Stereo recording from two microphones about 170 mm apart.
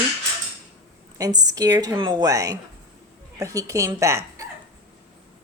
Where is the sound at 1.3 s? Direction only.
20° right (ahead or behind).